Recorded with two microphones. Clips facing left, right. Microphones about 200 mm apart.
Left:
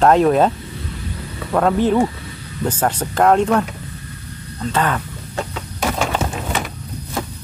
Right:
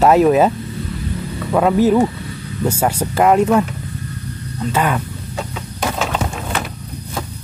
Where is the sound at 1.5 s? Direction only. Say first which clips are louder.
Right 2 dB; 5° right (ahead or behind).